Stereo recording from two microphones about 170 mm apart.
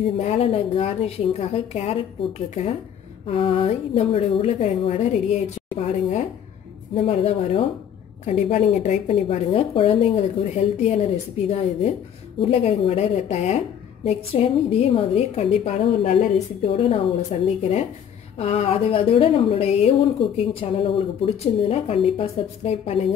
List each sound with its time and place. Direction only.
0.0 s speech: 40° left (ahead or behind)
3.3 s speech: 35° left (ahead or behind)